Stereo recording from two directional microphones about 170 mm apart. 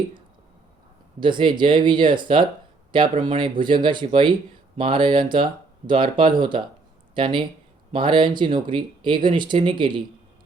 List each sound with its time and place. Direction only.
1.2 s speech: 30° right (ahead or behind)